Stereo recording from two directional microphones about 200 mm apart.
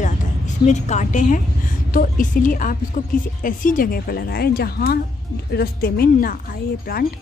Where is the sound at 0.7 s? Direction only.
35° left (ahead or behind).